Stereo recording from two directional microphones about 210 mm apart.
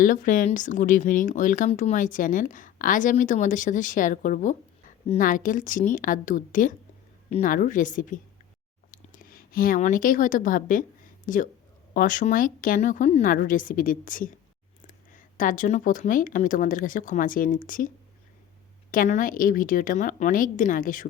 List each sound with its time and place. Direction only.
0.0 s speech: 40° left (ahead or behind)